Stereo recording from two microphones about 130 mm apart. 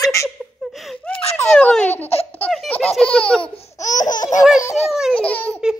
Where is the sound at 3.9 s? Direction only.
75° left (ahead or behind).